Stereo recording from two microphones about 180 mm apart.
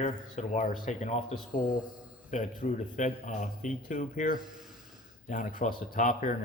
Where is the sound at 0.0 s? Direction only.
40° left (ahead or behind).